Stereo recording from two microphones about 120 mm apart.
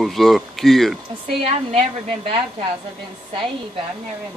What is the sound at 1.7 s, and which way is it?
Speech, 55° right (ahead or behind).